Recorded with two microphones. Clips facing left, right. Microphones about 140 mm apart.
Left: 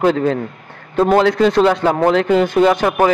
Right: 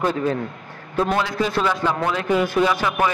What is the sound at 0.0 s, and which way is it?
Speech, 90° left.